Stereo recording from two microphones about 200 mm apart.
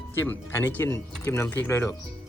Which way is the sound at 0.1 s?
10° left (ahead or behind).